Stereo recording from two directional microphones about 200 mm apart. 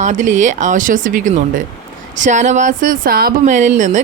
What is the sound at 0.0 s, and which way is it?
Speech, 35° right (ahead or behind).